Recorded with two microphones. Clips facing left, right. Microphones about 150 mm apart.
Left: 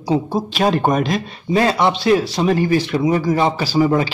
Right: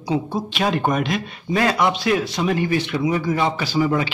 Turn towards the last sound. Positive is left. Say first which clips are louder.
# left 4 dB
turn(degrees=35)  # may be behind; listen again after turning